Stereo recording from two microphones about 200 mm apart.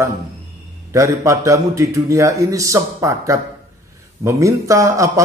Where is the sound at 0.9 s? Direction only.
15° right (ahead or behind).